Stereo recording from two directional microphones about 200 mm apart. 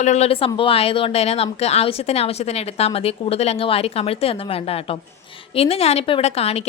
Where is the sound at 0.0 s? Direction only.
35° left (ahead or behind).